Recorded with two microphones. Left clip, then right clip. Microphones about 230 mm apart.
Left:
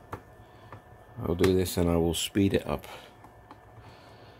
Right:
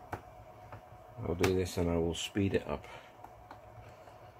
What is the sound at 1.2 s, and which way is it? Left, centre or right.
Speech, left.